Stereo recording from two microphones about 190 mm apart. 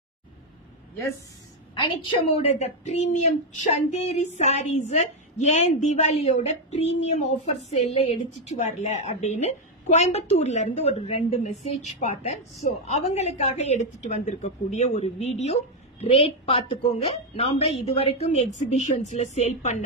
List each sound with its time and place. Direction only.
1.8 s a woman's voice: 30° left (ahead or behind)